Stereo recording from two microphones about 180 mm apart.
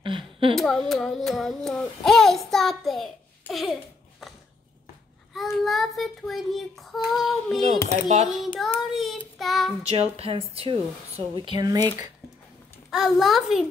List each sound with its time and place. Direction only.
0.0 s a sound: 30° right (ahead or behind)
0.6 s child singing: centre (ahead or behind)
5.3 s child singing: centre (ahead or behind)
7.9 s a woman's voice: 40° right (ahead or behind)
8.3 s child singing: centre (ahead or behind)
9.8 s a woman's voice: 35° right (ahead or behind)
12.9 s child singing: centre (ahead or behind)